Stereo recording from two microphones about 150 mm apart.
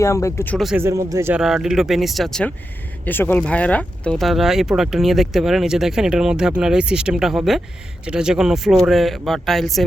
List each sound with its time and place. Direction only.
0.0 s speech: 20° left (ahead or behind)
0.5 s speech: centre (ahead or behind)
0.8 s speech: 20° right (ahead or behind)
1.3 s speech: 5° right (ahead or behind)
3.0 s speech: 15° left (ahead or behind)